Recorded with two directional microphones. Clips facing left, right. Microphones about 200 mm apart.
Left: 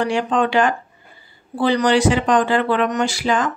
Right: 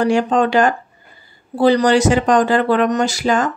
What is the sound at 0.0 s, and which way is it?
Speech, 40° right (ahead or behind).